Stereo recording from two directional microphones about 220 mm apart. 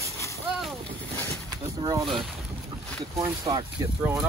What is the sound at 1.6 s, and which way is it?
Speech, 15° right (ahead or behind).